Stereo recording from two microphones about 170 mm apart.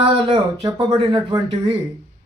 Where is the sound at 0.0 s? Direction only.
30° right (ahead or behind).